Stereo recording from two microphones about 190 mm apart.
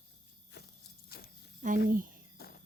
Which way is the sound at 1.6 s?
40° right (ahead or behind).